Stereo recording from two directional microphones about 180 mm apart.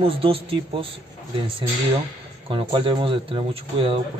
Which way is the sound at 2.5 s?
30° right (ahead or behind).